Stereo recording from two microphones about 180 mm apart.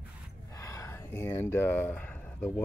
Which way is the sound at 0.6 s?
15° left (ahead or behind).